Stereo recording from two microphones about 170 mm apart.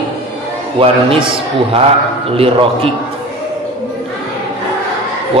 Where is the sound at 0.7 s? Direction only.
30° right (ahead or behind).